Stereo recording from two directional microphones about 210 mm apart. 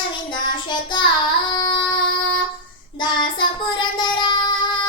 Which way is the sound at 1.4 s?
20° left (ahead or behind).